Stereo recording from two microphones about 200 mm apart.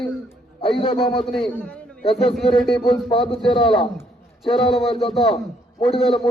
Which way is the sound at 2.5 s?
25° left (ahead or behind).